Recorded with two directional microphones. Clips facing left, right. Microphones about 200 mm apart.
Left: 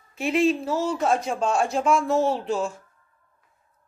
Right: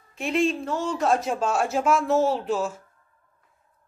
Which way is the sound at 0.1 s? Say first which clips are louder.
Left 2 dB; centre (ahead or behind).